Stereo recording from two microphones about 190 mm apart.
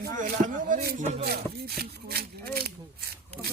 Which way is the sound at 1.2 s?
55° right (ahead or behind).